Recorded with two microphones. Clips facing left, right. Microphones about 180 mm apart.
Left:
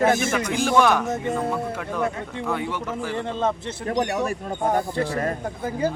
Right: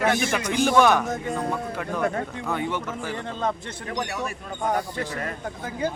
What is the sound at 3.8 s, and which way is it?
A man's voice, 40° left (ahead or behind).